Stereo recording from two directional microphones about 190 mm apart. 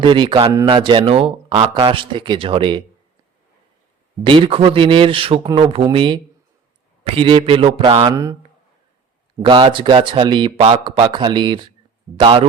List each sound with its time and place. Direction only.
0.0 s speech: 25° right (ahead or behind)
4.2 s speech: 25° right (ahead or behind)
7.2 s speech: 25° right (ahead or behind)
9.4 s speech: 25° right (ahead or behind)